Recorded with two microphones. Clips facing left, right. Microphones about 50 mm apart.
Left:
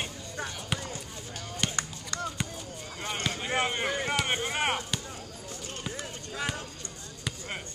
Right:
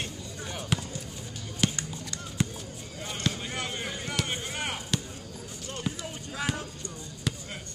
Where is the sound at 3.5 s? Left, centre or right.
Left.